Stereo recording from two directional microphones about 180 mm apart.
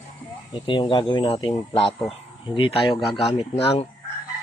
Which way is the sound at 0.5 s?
30° left (ahead or behind).